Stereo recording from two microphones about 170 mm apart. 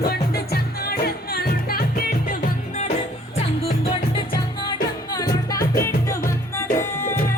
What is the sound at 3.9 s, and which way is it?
Music, 30° left (ahead or behind).